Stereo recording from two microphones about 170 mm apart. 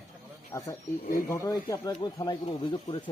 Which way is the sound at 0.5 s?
15° left (ahead or behind).